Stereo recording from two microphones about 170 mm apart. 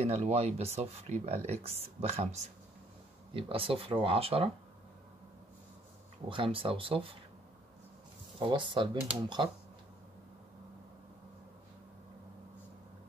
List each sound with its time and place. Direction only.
0.0 s speech: 40° right (ahead or behind)
6.2 s speech: 30° right (ahead or behind)
8.4 s speech: 30° right (ahead or behind)